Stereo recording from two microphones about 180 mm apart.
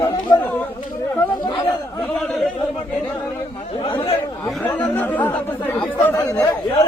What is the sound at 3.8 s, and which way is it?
Chatter, 30° left (ahead or behind).